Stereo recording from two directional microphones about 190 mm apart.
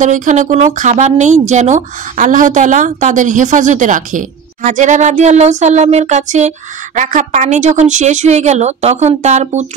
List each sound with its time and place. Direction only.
0.0 s a woman's voice: 40° right (ahead or behind)